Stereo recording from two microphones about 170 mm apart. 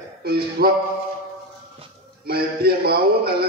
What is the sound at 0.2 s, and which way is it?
Speech, 65° right (ahead or behind).